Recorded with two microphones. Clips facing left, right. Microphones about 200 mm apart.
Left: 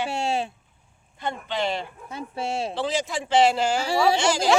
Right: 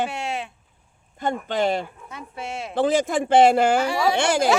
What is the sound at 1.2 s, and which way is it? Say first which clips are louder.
Speech: right 5 dB; 45° right (ahead or behind).